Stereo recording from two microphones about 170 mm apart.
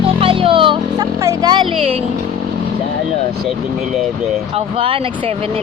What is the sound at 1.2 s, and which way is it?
Speech, 20° right (ahead or behind).